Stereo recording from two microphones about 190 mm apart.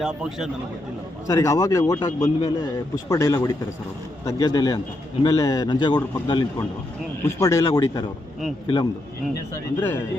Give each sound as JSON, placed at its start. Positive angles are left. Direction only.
{"t": 0.0, "sound": "speech", "side_deg": 0}
{"t": 1.3, "sound": "a man's voice", "side_deg": 15}